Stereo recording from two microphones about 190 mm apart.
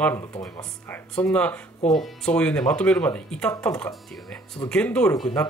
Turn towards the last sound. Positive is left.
turn(degrees=20)  # may be behind; listen again after turning